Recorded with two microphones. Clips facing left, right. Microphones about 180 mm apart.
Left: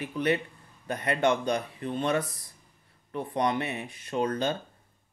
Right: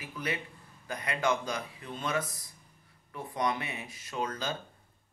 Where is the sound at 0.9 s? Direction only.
60° left (ahead or behind).